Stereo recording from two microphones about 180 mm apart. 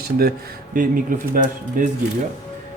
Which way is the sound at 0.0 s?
60° right (ahead or behind).